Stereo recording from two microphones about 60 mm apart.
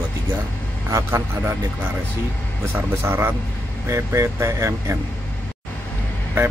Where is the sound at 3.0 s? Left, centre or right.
Right.